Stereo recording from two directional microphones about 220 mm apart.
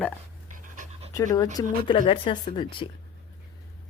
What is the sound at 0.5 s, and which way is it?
Pant, 35° right (ahead or behind).